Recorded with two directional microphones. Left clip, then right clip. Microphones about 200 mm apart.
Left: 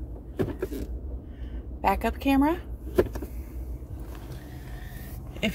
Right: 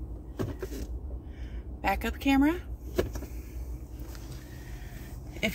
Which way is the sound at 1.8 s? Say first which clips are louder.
Left 4 dB; 25° left (ahead or behind).